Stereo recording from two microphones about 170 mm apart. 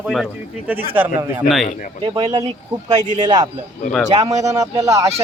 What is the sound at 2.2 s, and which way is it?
Speech, 25° right (ahead or behind).